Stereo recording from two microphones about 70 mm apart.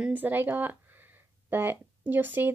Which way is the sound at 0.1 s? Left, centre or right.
Right.